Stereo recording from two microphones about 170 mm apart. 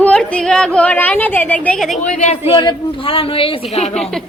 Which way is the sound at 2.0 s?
45° left (ahead or behind).